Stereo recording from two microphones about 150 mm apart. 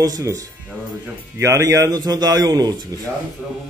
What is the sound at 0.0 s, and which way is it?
A man's voice, 25° right (ahead or behind).